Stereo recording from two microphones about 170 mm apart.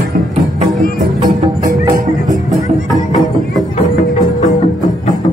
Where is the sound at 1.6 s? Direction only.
20° right (ahead or behind).